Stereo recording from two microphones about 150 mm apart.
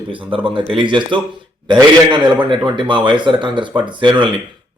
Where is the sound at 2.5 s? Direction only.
30° right (ahead or behind).